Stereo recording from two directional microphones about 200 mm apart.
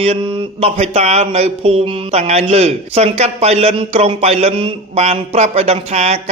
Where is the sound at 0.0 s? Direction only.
30° right (ahead or behind).